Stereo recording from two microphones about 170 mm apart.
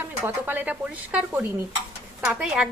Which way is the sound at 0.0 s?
10° right (ahead or behind).